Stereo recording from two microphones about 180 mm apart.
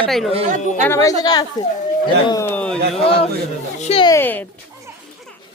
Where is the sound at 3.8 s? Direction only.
30° left (ahead or behind).